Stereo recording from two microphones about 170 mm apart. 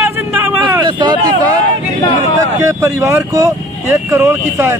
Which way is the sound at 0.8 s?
25° right (ahead or behind).